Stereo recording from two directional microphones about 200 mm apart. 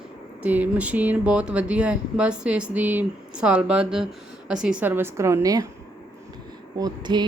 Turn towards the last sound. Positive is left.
turn(degrees=-20)  # may be behind; listen again after turning